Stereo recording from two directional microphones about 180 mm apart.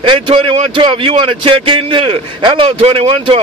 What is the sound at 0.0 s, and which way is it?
Speech, 30° right (ahead or behind).